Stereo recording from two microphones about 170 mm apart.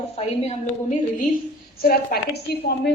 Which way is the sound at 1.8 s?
65° left (ahead or behind).